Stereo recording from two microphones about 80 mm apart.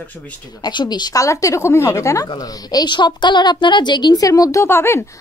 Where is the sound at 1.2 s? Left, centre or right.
Left.